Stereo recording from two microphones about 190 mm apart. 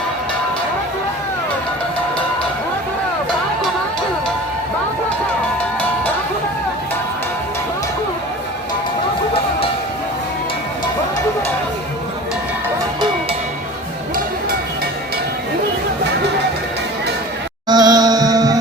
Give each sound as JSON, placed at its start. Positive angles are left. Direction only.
{"t": 17.7, "sound": "music", "side_deg": -20}